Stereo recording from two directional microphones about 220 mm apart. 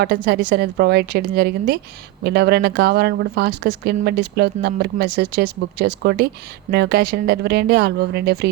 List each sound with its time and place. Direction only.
0.0 s speech: 45° right (ahead or behind)